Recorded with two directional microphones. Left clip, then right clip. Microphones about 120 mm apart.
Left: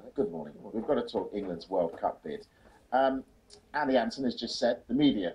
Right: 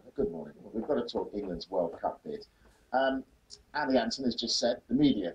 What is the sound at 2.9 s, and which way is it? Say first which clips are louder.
Speech: left 2 dB; 45° left (ahead or behind).